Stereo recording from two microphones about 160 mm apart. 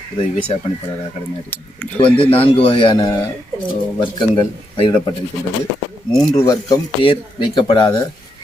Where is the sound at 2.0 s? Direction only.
35° left (ahead or behind).